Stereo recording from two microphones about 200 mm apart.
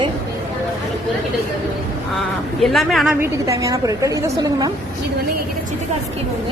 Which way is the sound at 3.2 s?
15° right (ahead or behind).